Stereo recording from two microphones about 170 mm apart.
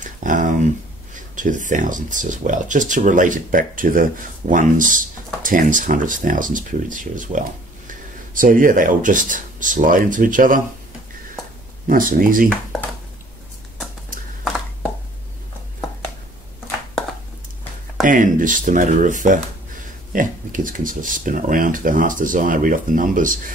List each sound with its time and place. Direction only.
0.0 s a sound: 50° right (ahead or behind)
1.3 s speech: 50° right (ahead or behind)
11.9 s speech: 55° right (ahead or behind)
18.0 s speech: 50° right (ahead or behind)